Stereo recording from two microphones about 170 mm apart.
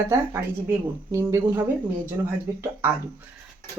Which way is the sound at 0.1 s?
15° right (ahead or behind).